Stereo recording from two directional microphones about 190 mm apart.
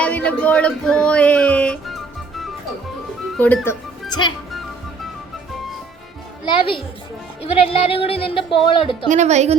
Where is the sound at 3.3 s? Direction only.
10° left (ahead or behind).